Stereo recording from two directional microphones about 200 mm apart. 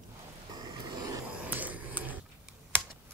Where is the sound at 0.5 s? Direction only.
20° right (ahead or behind).